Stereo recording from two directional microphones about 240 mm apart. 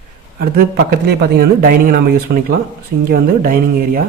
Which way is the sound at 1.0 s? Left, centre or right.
Right.